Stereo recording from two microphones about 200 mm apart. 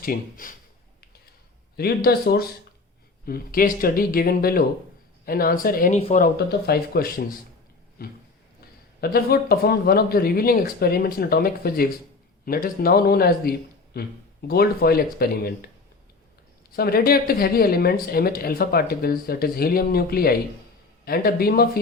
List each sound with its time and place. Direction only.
0.0 s speech: 45° left (ahead or behind)
1.7 s speech: 50° left (ahead or behind)
6.0 s speech: 30° left (ahead or behind)
6.2 s speech: 50° left (ahead or behind)
9.0 s speech: 50° left (ahead or behind)
16.7 s speech: 50° left (ahead or behind)